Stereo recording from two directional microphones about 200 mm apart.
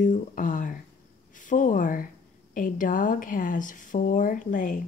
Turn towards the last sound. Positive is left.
turn(degrees=40)  # may be behind; listen again after turning